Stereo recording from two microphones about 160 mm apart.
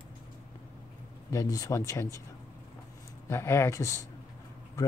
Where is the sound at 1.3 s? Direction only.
20° left (ahead or behind).